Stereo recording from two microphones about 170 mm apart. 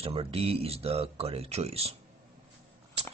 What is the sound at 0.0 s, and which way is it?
Speech, 35° right (ahead or behind).